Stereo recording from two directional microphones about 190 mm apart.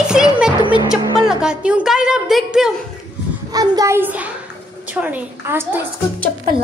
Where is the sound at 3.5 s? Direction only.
20° right (ahead or behind).